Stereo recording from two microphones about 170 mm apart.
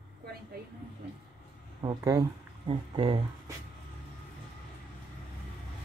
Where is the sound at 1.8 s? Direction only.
25° right (ahead or behind).